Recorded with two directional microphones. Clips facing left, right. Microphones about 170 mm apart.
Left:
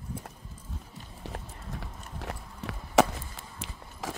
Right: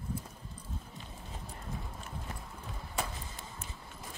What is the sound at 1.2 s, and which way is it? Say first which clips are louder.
Clip-clop: left 5 dB; 75° left (ahead or behind).